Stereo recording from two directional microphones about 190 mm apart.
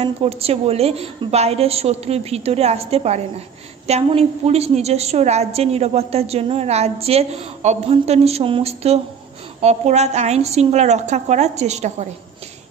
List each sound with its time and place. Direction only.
0.0 s a woman's voice: 30° right (ahead or behind)